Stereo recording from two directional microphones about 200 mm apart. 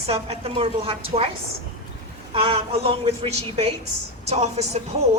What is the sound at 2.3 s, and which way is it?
A woman's voice, 30° right (ahead or behind).